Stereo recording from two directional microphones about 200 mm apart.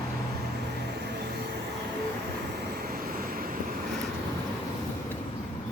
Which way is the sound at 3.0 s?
45° right (ahead or behind).